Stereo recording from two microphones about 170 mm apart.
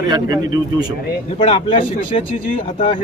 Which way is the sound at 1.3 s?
35° left (ahead or behind).